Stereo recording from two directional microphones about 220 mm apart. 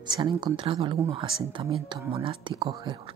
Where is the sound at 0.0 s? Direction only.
20° right (ahead or behind).